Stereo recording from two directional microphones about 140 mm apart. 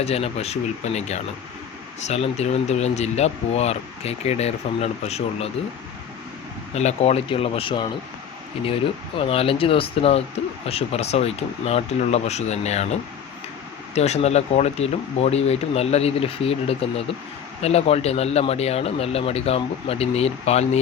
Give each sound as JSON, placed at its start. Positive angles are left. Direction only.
{"t": 0.0, "sound": "speech", "side_deg": 45}
{"t": 6.7, "sound": "speech", "side_deg": 50}
{"t": 13.9, "sound": "speech", "side_deg": 50}